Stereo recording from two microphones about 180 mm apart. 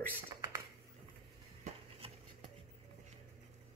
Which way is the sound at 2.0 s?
30° right (ahead or behind).